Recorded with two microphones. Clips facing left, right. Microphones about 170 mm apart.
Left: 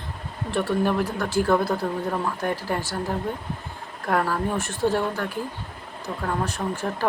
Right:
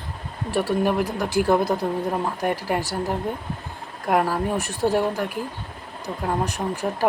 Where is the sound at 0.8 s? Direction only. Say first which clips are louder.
Right 1 dB; 15° right (ahead or behind).